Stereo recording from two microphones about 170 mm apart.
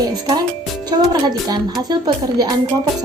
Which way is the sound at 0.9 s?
25° right (ahead or behind).